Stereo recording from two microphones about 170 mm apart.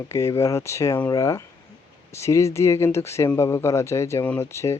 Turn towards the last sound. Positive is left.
turn(degrees=15)  # may be behind; listen again after turning